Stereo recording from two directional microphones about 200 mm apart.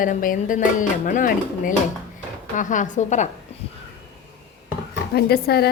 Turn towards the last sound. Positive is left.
turn(degrees=50)  # may be behind; listen again after turning